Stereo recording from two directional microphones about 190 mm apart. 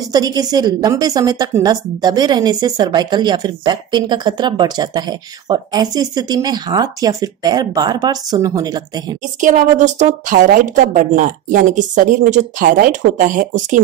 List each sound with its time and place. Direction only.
0.1 s a woman's voice: 20° right (ahead or behind)
9.4 s a woman's voice: 40° right (ahead or behind)